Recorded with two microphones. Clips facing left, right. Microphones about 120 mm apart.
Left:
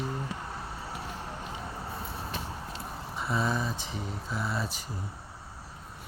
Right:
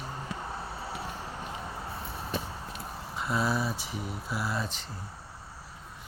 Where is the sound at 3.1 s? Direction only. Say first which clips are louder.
Right 1 dB; centre (ahead or behind).